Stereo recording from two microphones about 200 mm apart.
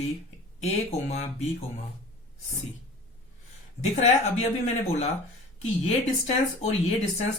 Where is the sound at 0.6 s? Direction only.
35° left (ahead or behind).